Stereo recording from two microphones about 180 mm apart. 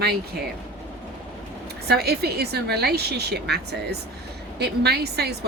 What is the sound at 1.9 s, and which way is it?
A woman's voice, 60° right (ahead or behind).